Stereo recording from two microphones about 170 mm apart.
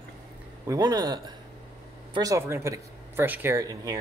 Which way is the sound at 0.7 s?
20° right (ahead or behind).